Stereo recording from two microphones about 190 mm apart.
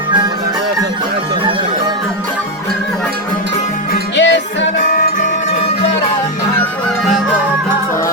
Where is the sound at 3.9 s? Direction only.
70° left (ahead or behind).